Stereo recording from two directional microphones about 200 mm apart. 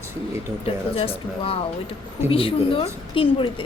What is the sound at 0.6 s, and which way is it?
A woman's voice, 30° left (ahead or behind).